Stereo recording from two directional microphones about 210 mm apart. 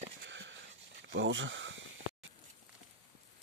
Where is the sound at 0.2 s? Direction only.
60° right (ahead or behind).